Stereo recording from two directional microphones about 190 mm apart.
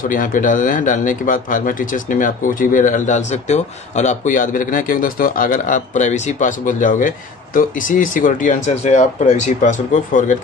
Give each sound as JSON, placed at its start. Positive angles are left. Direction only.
{"t": 0.0, "sound": "speech", "side_deg": 45}